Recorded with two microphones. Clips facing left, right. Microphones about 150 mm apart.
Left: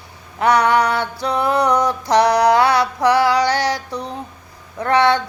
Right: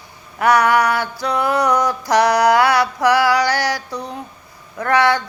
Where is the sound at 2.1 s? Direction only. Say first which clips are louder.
Even; 25° left (ahead or behind).